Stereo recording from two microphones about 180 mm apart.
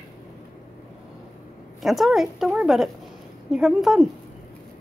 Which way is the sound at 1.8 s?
Centre (ahead or behind).